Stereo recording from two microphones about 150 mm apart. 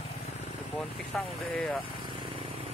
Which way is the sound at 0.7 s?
10° left (ahead or behind).